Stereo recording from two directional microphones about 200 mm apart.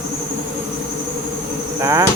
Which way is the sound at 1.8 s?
15° right (ahead or behind).